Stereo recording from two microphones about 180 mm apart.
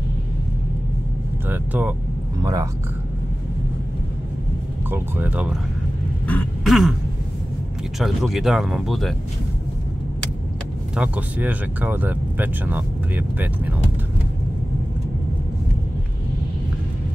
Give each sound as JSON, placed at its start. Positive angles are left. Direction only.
{"t": 1.5, "sound": "speech", "side_deg": -10}
{"t": 2.4, "sound": "speech", "side_deg": -20}
{"t": 4.9, "sound": "speech", "side_deg": -10}
{"t": 6.2, "sound": "throat clearing", "side_deg": 10}
{"t": 6.7, "sound": "speech", "side_deg": 0}
{"t": 8.0, "sound": "speech", "side_deg": 0}
{"t": 11.0, "sound": "speech", "side_deg": -10}